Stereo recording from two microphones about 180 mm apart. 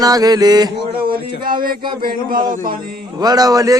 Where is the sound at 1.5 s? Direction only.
50° right (ahead or behind).